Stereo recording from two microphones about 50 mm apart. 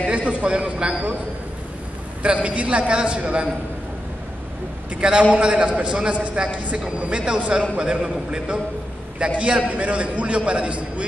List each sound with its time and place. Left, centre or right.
0.0 s a man's voice: right
2.2 s a man's voice: right
5.0 s a man's voice: right